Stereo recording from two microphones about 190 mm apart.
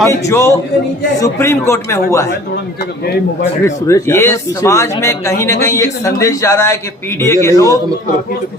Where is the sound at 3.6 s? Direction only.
15° left (ahead or behind).